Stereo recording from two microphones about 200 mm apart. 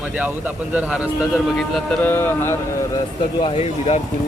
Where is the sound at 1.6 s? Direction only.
5° left (ahead or behind).